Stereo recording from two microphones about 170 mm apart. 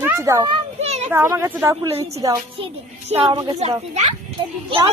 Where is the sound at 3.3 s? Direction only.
25° right (ahead or behind).